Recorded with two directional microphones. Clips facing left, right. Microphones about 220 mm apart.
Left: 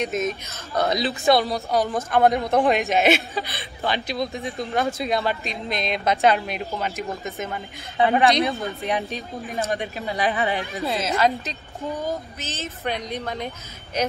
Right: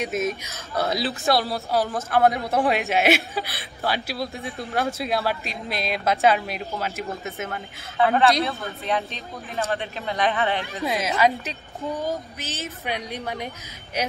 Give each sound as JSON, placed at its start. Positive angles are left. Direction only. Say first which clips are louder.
{"t": 0.3, "sound": "a woman's voice", "louder": "left 1 dB", "side_deg": -10}
{"t": 0.8, "sound": "a woman's voice", "louder": "left 4 dB", "side_deg": 0}
{"t": 8.0, "sound": "a woman's voice", "louder": "left 1 dB", "side_deg": 15}
{"t": 10.8, "sound": "a woman's voice", "louder": "even", "side_deg": -15}